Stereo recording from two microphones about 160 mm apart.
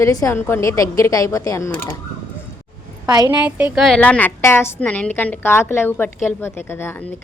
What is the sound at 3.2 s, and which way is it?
Speech, 10° right (ahead or behind).